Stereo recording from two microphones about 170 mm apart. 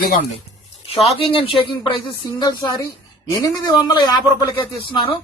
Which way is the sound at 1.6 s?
30° left (ahead or behind).